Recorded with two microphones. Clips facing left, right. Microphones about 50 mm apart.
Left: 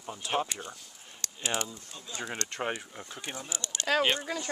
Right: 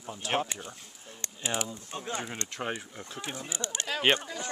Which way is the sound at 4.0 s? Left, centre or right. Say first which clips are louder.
Right 6 dB; right.